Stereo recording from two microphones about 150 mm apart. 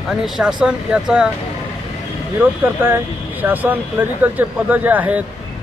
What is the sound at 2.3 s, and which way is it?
Speech, 15° right (ahead or behind).